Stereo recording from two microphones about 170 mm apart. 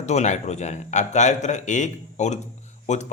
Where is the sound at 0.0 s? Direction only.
40° left (ahead or behind).